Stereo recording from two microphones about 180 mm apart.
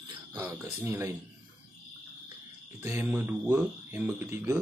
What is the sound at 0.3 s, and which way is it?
Speech, 20° right (ahead or behind).